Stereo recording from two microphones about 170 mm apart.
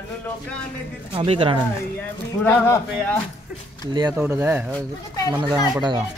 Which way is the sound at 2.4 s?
10° left (ahead or behind).